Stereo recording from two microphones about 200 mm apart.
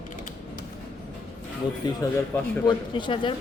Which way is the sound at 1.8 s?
20° left (ahead or behind).